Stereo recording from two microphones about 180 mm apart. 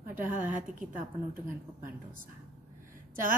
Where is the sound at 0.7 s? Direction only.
5° right (ahead or behind).